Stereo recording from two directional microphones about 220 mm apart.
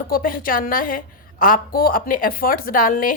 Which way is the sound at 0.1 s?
40° left (ahead or behind).